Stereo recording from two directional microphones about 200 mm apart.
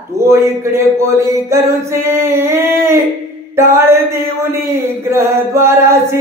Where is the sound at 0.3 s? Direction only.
15° right (ahead or behind).